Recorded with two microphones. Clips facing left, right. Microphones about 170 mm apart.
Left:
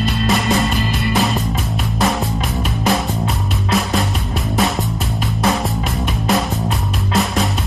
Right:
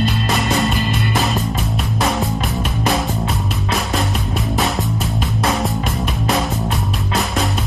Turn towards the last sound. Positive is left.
turn(degrees=0)  # may be behind; listen again after turning